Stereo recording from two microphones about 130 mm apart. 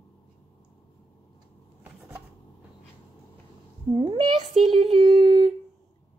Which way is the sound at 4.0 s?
40° right (ahead or behind).